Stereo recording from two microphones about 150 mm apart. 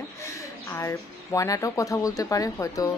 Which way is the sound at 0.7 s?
20° left (ahead or behind).